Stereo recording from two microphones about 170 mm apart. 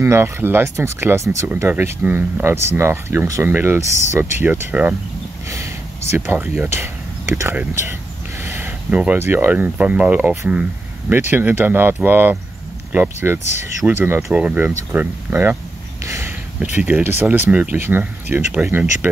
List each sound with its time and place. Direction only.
0.0 s speech: 15° right (ahead or behind)
16.7 s speech: 10° right (ahead or behind)